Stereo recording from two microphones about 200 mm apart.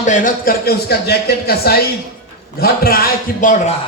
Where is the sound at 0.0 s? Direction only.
40° left (ahead or behind).